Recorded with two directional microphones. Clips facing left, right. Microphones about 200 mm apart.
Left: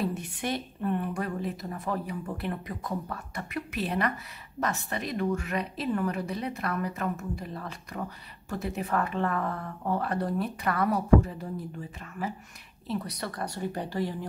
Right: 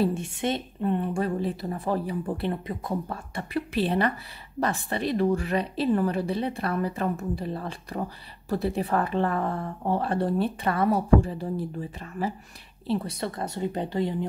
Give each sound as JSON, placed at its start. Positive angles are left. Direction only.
{"t": 0.0, "sound": "a woman's voice", "side_deg": -25}